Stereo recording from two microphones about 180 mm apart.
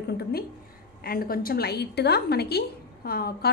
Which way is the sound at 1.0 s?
55° left (ahead or behind).